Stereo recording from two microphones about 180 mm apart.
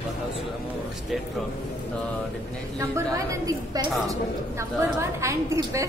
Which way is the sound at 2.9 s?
20° right (ahead or behind).